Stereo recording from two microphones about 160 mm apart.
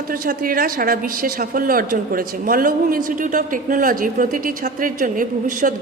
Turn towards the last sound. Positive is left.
turn(degrees=-60)  # may be behind; listen again after turning